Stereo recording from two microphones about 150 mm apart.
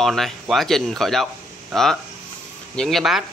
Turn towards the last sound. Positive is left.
turn(degrees=0)  # may be behind; listen again after turning